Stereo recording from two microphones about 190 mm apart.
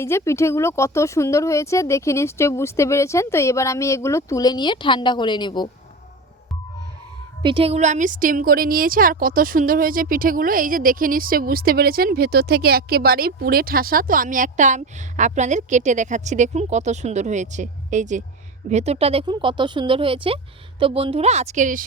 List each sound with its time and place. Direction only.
0.0 s speech: 15° left (ahead or behind)
7.4 s a woman's voice: 30° right (ahead or behind); by 21.8 s 45° right (ahead or behind)